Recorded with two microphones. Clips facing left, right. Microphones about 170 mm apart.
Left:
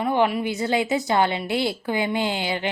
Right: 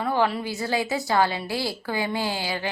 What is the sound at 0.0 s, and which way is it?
A woman's voice, 15° left (ahead or behind).